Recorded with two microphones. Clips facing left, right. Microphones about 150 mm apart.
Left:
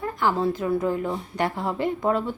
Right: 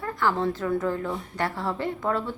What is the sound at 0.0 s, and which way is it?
Speech, 15° left (ahead or behind).